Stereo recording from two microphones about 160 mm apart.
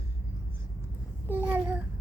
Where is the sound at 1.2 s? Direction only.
10° right (ahead or behind).